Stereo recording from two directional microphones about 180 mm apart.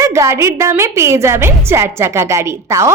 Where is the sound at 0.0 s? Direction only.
15° right (ahead or behind).